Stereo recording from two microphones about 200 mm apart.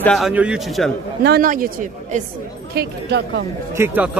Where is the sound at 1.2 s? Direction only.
45° right (ahead or behind).